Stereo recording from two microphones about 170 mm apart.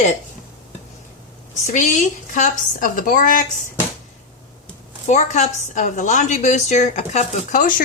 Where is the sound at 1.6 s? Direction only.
45° left (ahead or behind).